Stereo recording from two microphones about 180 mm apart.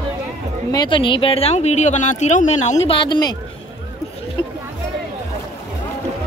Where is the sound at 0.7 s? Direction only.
25° left (ahead or behind).